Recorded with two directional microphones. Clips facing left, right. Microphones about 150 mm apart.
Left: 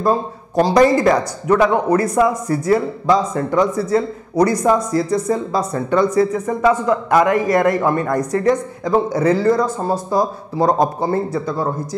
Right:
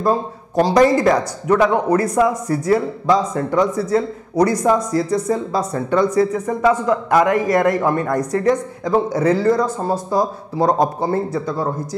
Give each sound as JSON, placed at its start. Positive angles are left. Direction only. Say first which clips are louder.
{"t": 0.7, "sound": "speech", "louder": "left 1 dB", "side_deg": 20}